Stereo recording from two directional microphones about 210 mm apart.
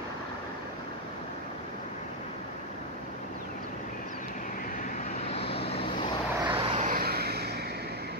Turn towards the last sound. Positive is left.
turn(degrees=-50)  # may be behind; listen again after turning